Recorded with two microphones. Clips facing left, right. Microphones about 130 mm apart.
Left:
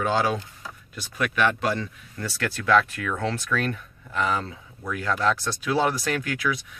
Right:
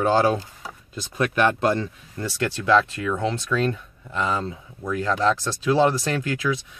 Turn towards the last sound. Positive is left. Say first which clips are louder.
# right 2 dB
turn(degrees=-25)  # may be behind; listen again after turning